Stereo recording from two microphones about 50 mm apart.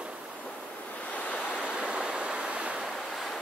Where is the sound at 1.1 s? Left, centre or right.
Left.